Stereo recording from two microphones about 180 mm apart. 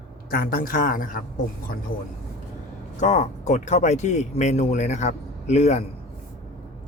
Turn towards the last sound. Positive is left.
turn(degrees=40)  # may be behind; listen again after turning